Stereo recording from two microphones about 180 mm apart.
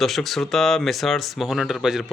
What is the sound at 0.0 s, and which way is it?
Speech, centre (ahead or behind).